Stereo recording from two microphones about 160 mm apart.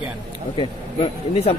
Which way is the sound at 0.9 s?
40° left (ahead or behind).